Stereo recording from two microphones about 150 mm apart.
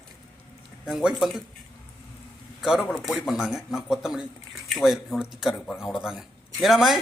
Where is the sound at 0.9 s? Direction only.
5° right (ahead or behind).